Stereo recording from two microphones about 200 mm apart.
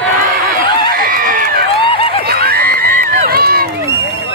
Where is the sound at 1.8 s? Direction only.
25° left (ahead or behind).